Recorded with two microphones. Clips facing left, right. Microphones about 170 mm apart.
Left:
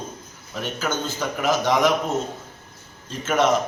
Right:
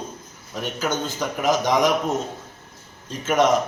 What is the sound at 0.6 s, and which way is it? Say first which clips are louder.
Speech: right 1 dB; 15° right (ahead or behind).